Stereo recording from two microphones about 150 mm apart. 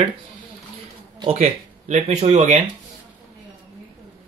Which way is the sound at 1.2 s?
50° right (ahead or behind).